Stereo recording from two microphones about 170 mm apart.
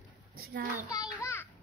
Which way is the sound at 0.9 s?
20° left (ahead or behind).